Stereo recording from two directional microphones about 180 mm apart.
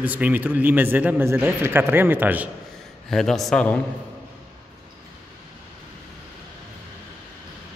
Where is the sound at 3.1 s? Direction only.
Centre (ahead or behind).